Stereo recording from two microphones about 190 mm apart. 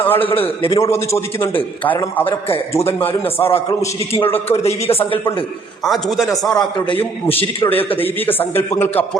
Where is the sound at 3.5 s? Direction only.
30° left (ahead or behind).